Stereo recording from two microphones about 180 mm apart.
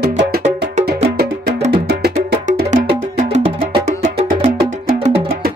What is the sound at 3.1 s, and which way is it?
Music, 35° right (ahead or behind).